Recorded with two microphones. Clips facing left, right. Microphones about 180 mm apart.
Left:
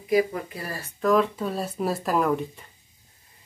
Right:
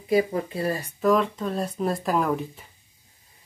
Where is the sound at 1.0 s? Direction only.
5° left (ahead or behind).